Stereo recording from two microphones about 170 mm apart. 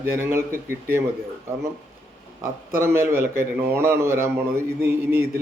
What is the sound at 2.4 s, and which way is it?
A man's voice, 15° right (ahead or behind).